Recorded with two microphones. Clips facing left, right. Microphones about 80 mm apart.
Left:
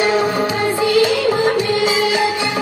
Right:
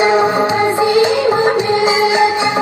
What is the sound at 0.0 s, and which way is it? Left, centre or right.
Music, right.